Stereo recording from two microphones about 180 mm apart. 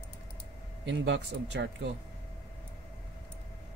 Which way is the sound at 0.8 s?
85° right.